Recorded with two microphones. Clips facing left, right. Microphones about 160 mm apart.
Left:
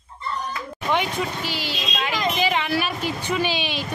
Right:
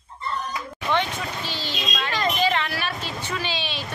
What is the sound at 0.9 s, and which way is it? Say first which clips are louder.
A child's voice: left 2 dB; 10° left (ahead or behind).